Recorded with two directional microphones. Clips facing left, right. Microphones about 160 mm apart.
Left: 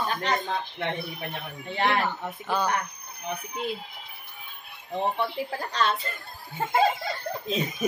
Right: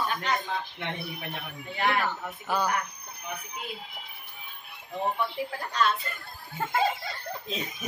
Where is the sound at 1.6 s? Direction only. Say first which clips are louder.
Left 2 dB; 30° left (ahead or behind).